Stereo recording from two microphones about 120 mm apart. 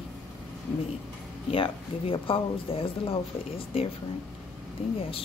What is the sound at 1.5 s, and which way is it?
Speech, 50° left (ahead or behind).